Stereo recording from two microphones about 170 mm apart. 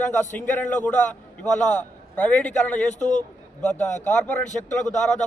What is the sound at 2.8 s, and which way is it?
A man's voice, 45° left (ahead or behind).